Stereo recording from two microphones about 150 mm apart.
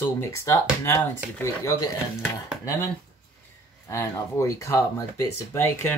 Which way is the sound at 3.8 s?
20° left (ahead or behind).